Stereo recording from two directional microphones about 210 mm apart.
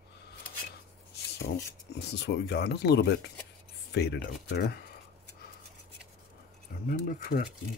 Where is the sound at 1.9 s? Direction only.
50° left (ahead or behind).